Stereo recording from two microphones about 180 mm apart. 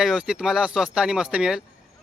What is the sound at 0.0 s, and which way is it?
Speech, centre (ahead or behind).